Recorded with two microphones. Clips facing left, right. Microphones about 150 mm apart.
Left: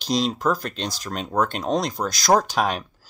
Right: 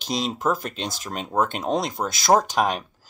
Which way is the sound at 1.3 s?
25° right (ahead or behind).